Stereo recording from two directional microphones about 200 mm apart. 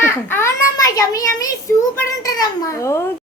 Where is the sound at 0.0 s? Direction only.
10° left (ahead or behind).